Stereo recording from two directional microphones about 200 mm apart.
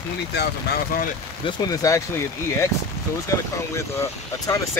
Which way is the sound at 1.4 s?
20° left (ahead or behind).